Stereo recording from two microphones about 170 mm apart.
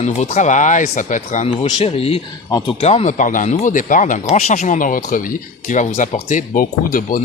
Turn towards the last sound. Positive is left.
turn(degrees=55)  # may be behind; listen again after turning